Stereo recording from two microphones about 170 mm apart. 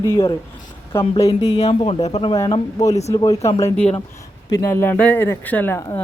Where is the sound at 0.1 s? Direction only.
15° left (ahead or behind).